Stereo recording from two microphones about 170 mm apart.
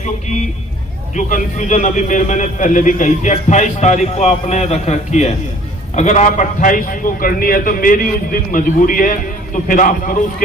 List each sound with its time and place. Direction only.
1.1 s a man's voice: 50° left (ahead or behind)